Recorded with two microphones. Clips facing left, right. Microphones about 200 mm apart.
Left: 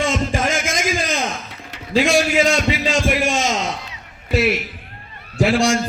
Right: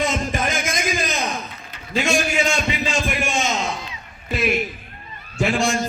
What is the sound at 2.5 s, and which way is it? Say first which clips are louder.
A man's voice: left 4 dB; 90° left.